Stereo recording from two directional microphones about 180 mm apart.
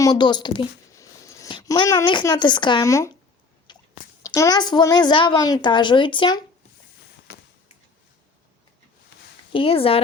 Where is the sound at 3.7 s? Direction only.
25° left (ahead or behind).